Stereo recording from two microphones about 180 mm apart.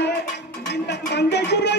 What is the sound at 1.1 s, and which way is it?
Music, 70° left (ahead or behind).